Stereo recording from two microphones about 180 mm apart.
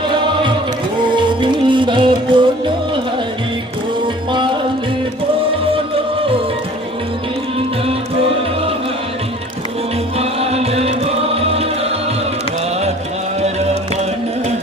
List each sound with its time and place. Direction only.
1.1 s music: 25° right (ahead or behind)
10.2 s music: 35° right (ahead or behind)